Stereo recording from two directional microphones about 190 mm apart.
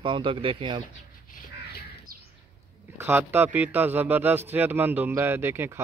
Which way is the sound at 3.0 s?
10° right (ahead or behind).